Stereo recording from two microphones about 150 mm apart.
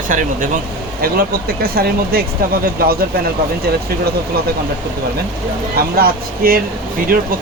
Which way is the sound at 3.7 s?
90° right.